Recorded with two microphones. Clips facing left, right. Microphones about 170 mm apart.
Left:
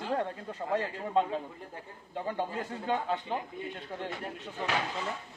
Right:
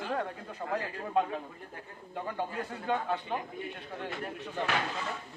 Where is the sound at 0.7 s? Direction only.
25° left (ahead or behind).